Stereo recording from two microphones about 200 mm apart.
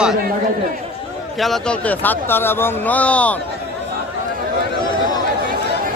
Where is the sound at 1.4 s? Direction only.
5° left (ahead or behind).